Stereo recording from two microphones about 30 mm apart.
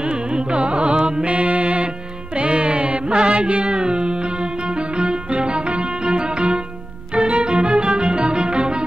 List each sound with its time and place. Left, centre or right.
0.0 s carnatic music: right
2.3 s music: right